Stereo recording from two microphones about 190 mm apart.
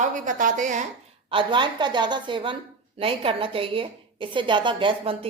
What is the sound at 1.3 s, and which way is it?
A woman's voice, 25° right (ahead or behind).